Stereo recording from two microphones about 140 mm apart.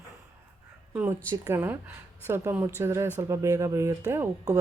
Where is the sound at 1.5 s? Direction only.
15° right (ahead or behind).